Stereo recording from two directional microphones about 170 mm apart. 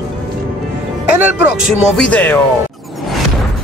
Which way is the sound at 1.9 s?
5° left (ahead or behind).